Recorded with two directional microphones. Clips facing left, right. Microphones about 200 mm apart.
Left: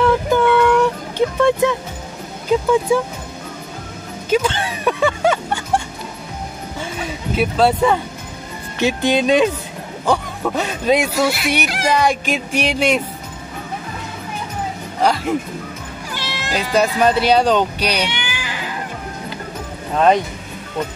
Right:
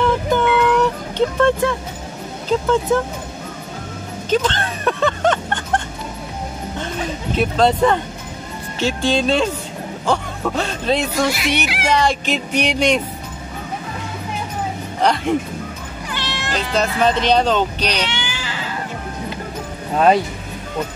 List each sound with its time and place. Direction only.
0.3 s a sound: 5° right (ahead or behind)
0.7 s music: 10° left (ahead or behind)
2.5 s speech: 10° left (ahead or behind)
4.3 s music: 10° left (ahead or behind)
7.3 s speech: 5° left (ahead or behind)
15.0 s speech: 5° left (ahead or behind)